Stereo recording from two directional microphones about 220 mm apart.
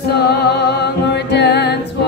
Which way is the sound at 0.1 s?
50° left (ahead or behind).